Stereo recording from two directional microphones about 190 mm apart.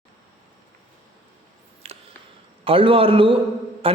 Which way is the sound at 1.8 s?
35° right (ahead or behind).